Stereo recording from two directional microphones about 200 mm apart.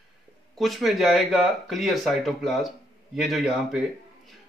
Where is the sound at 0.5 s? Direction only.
Centre (ahead or behind).